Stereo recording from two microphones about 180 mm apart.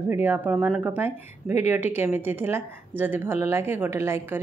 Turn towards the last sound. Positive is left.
turn(degrees=-15)  # may be behind; listen again after turning